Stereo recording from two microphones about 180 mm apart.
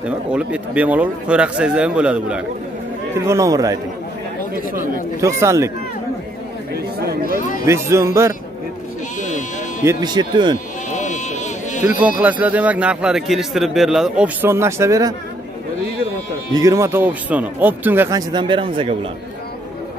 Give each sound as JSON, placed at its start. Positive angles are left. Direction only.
{"t": 0.3, "sound": "speech", "side_deg": -5}
{"t": 3.3, "sound": "speech", "side_deg": -15}
{"t": 5.2, "sound": "a man's voice", "side_deg": -15}
{"t": 7.6, "sound": "a man's voice", "side_deg": -15}
{"t": 9.8, "sound": "speech", "side_deg": -25}
{"t": 10.9, "sound": "a sound", "side_deg": 40}
{"t": 12.0, "sound": "a man's voice", "side_deg": -10}
{"t": 16.5, "sound": "a man's voice", "side_deg": -20}
{"t": 18.3, "sound": "speech", "side_deg": -25}